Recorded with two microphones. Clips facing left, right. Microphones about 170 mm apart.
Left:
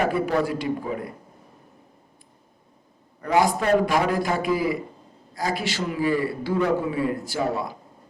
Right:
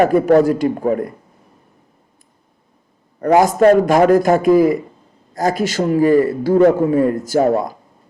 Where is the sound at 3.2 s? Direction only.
45° right (ahead or behind).